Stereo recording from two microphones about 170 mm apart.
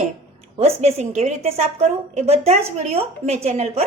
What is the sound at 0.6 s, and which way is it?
A woman's voice, 40° right (ahead or behind).